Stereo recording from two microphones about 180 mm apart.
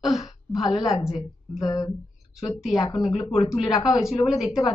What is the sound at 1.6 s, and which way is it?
Speech, 20° left (ahead or behind).